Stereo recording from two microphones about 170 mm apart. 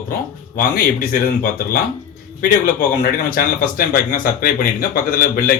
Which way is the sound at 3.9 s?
60° left (ahead or behind).